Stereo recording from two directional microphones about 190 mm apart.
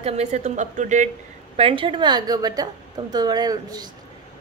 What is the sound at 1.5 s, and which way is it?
A woman's voice, 30° right (ahead or behind).